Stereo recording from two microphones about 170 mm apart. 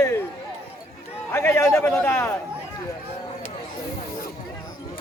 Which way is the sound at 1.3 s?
15° left (ahead or behind).